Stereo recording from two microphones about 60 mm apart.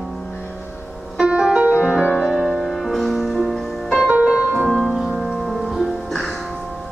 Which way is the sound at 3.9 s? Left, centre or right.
Centre.